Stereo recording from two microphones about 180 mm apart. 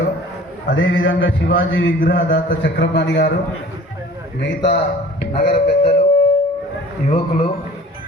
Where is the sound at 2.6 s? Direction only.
80° left.